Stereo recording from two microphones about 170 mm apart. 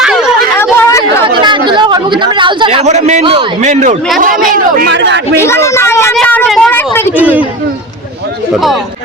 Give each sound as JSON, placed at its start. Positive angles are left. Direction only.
{"t": 0.0, "sound": "a sound", "side_deg": -5}
{"t": 0.5, "sound": "chatter", "side_deg": 15}
{"t": 1.2, "sound": "chatter", "side_deg": -30}
{"t": 3.6, "sound": "a man's voice", "side_deg": -45}
{"t": 4.9, "sound": "a man's voice", "side_deg": -90}
{"t": 5.3, "sound": "speech", "side_deg": 15}
{"t": 6.1, "sound": "a sound", "side_deg": 10}
{"t": 7.2, "sound": "speech", "side_deg": -10}